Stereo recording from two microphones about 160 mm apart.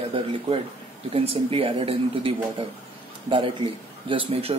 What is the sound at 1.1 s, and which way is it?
Speech, 35° right (ahead or behind).